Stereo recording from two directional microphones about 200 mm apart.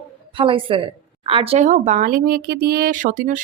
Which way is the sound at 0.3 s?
25° right (ahead or behind).